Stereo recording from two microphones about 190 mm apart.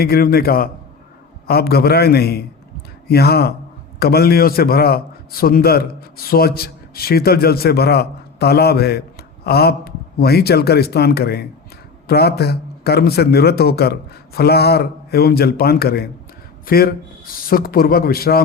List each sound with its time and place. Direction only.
0.0 s a man's voice: 55° left (ahead or behind)